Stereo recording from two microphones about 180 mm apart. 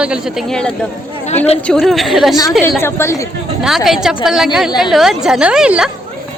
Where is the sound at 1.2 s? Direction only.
35° left (ahead or behind).